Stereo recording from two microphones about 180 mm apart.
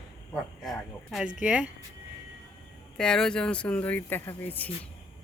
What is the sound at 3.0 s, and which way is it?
Speech, 5° left (ahead or behind).